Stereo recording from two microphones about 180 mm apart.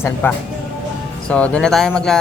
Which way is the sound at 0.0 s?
10° left (ahead or behind).